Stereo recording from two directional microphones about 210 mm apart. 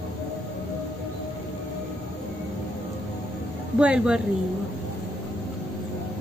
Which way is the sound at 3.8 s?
5° right (ahead or behind).